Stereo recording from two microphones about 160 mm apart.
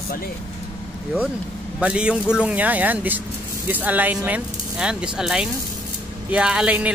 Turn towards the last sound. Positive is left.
turn(degrees=-5)  # may be behind; listen again after turning